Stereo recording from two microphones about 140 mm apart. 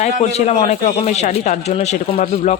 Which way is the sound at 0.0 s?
50° left (ahead or behind).